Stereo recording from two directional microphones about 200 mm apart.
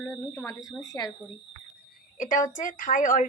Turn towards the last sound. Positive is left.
turn(degrees=40)  # may be behind; listen again after turning